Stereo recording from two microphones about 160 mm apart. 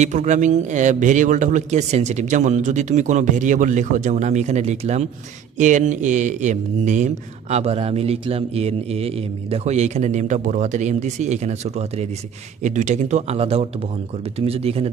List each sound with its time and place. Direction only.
0.0 s speech: 45° right (ahead or behind)